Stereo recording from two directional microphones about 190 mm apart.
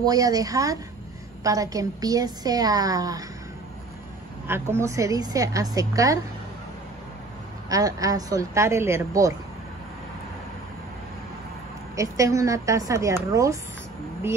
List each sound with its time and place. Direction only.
0.0 s a woman's voice: 20° right (ahead or behind)
4.5 s a woman's voice: 15° right (ahead or behind)
7.7 s a woman's voice: 20° right (ahead or behind)
11.9 s a woman's voice: 15° right (ahead or behind)